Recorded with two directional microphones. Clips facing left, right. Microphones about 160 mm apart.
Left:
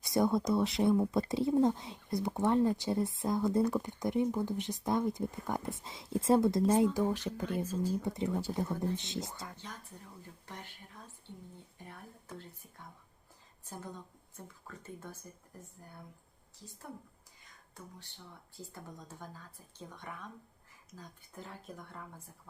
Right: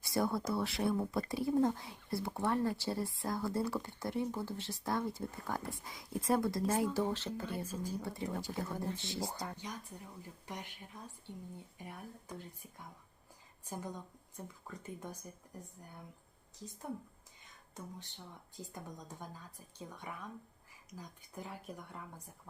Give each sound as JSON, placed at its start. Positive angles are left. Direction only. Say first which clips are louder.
{"t": 0.0, "sound": "speech", "louder": "left 5 dB", "side_deg": 20}
{"t": 10.4, "sound": "speech", "louder": "right 3 dB", "side_deg": -15}
{"t": 11.8, "sound": "speech", "louder": "right 1 dB", "side_deg": -10}
{"t": 17.8, "sound": "speech", "louder": "right 3 dB", "side_deg": -20}